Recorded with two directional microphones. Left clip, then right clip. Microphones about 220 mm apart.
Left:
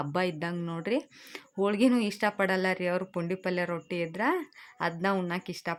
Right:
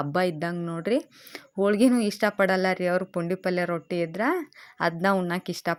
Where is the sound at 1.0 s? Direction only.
5° right (ahead or behind).